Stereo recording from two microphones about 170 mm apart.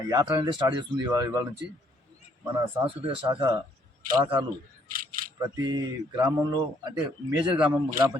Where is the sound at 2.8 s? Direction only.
30° right (ahead or behind).